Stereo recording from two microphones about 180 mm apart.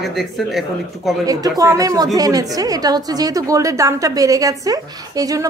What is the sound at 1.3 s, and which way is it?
A woman's voice, 20° right (ahead or behind).